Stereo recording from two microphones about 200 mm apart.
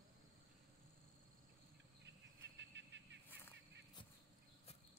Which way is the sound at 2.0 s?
60° right (ahead or behind).